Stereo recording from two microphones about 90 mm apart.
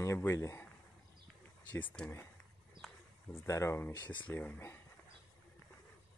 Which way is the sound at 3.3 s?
30° left (ahead or behind).